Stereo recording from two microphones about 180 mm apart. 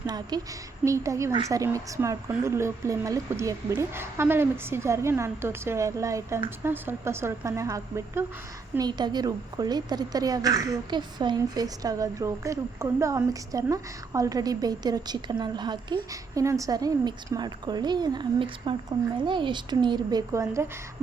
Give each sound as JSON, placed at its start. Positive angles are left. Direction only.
{"t": 0.0, "sound": "a woman's voice", "side_deg": -20}